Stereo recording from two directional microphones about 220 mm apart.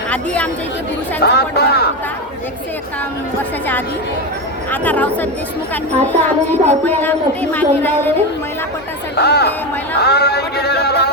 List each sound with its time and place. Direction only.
1.2 s speech: 45° left (ahead or behind)
4.7 s music: 5° left (ahead or behind)
9.1 s speech: 45° left (ahead or behind)
10.0 s a sound: 45° left (ahead or behind)